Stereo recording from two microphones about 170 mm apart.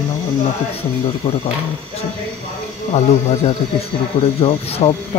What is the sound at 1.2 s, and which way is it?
Speech, 35° left (ahead or behind).